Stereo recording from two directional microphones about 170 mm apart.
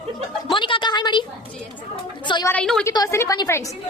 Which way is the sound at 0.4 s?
30° left (ahead or behind).